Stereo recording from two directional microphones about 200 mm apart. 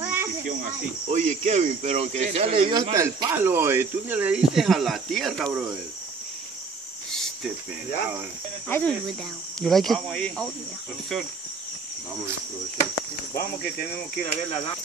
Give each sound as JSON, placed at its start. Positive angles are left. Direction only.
{"t": 0.0, "sound": "cricket", "side_deg": -10}
{"t": 0.5, "sound": "speech", "side_deg": -40}
{"t": 7.1, "sound": "cricket", "side_deg": 0}
{"t": 8.6, "sound": "speech", "side_deg": 5}
{"t": 13.3, "sound": "speech", "side_deg": 50}